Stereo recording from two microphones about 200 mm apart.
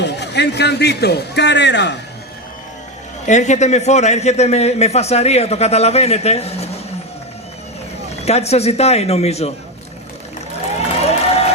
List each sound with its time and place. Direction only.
0.0 s a man's voice: 60° left (ahead or behind)
3.2 s a man's voice: 35° left (ahead or behind)
8.1 s a man's voice: 30° left (ahead or behind)
10.7 s a sound: 30° left (ahead or behind)